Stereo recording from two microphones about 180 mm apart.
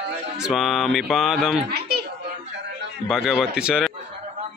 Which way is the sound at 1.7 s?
60° right (ahead or behind).